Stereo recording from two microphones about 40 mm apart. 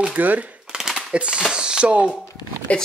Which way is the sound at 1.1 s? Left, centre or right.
Right.